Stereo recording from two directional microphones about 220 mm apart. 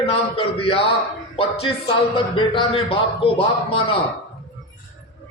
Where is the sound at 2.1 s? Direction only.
20° left (ahead or behind).